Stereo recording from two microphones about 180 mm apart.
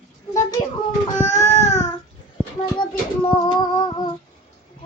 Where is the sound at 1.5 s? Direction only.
40° left (ahead or behind).